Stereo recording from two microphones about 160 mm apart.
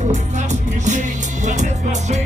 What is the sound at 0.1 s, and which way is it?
Music, 50° right (ahead or behind).